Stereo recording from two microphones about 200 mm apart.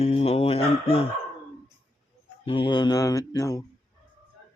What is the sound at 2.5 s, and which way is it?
Mantra, 25° left (ahead or behind).